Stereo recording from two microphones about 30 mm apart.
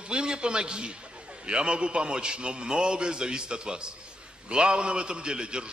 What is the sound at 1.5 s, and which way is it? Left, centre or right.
A man's voice, right.